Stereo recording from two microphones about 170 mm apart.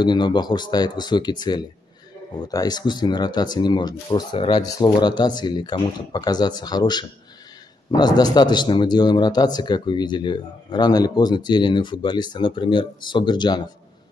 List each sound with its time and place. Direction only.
0.0 s a man's voice: 25° left (ahead or behind)